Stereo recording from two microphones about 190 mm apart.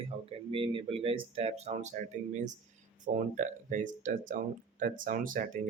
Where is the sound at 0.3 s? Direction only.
30° right (ahead or behind).